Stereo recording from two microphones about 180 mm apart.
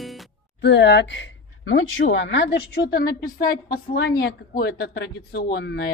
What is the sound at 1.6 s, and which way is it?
Speech, 90° left.